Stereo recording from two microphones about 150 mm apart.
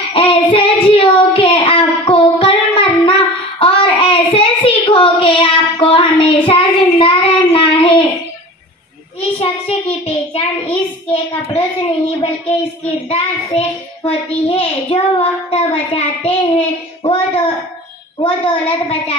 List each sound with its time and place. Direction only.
0.1 s child singing: 35° left (ahead or behind)
9.2 s child singing: 40° left (ahead or behind)
18.2 s a child's voice: 35° left (ahead or behind)